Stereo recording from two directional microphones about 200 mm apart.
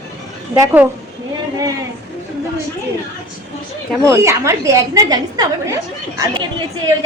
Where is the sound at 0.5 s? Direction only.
10° right (ahead or behind).